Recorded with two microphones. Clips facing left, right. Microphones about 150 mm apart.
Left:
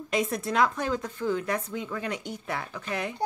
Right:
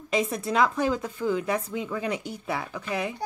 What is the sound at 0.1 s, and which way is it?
Speech, centre (ahead or behind).